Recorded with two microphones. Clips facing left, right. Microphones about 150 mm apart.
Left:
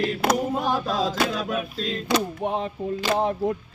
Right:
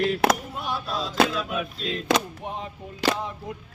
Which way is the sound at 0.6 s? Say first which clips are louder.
Left 6 dB; 90° left.